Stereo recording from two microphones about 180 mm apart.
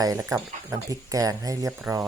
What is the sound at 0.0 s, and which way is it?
Speech, 15° right (ahead or behind).